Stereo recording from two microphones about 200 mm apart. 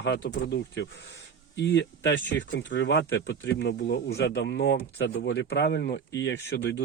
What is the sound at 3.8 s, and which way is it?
Speech, 55° left (ahead or behind).